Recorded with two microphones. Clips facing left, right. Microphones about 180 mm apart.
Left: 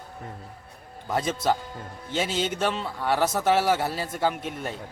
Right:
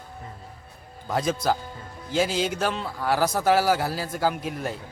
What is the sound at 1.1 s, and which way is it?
A man's voice, centre (ahead or behind).